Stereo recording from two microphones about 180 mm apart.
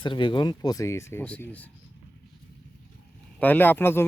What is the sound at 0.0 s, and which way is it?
Speech, 25° left (ahead or behind).